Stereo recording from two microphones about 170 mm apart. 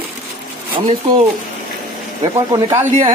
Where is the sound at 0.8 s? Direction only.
30° right (ahead or behind).